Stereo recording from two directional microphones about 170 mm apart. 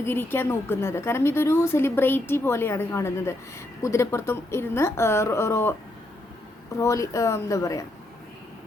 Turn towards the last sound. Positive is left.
turn(degrees=20)  # may be behind; listen again after turning